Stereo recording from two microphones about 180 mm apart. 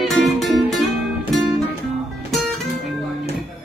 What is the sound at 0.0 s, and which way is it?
Music, centre (ahead or behind).